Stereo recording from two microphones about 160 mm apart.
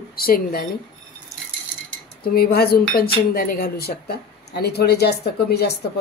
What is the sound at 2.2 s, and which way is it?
Speech, 70° left (ahead or behind).